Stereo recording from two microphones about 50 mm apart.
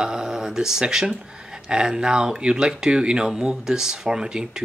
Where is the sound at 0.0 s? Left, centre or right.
Centre.